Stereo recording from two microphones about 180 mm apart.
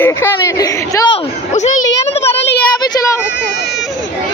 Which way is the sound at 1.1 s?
40° left (ahead or behind).